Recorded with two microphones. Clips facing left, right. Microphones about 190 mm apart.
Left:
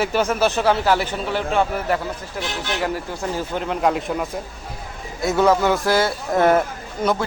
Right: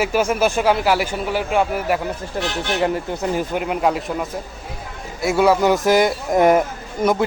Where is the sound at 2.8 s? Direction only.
25° right (ahead or behind); by 4.2 s centre (ahead or behind).